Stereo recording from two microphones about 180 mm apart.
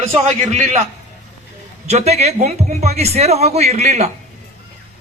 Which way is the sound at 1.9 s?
35° right (ahead or behind).